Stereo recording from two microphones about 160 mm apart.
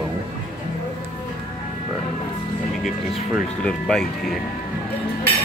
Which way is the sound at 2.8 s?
Centre (ahead or behind).